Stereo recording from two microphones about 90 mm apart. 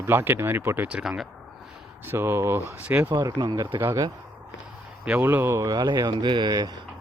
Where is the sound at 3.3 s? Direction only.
60° right (ahead or behind).